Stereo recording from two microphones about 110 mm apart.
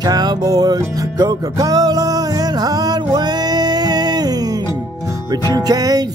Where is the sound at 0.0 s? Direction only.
40° right (ahead or behind).